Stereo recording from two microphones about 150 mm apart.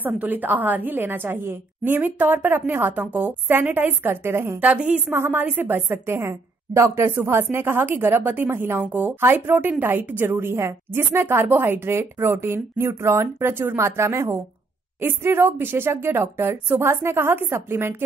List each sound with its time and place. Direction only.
0.0 s a woman's voice: 10° right (ahead or behind)